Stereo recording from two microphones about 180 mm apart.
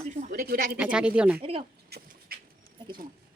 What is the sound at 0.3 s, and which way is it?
Speech, 55° right (ahead or behind).